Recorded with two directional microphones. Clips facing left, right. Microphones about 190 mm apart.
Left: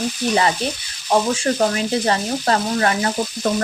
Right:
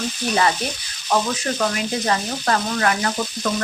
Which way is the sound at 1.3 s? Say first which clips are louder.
Left 4 dB; 30° left (ahead or behind).